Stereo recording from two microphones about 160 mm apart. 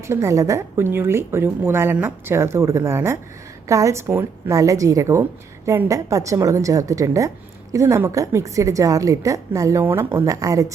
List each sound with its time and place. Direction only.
0.1 s a woman's voice: 20° right (ahead or behind)